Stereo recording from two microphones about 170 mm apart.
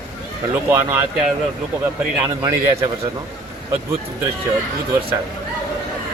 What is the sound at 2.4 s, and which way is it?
Speech, 20° right (ahead or behind).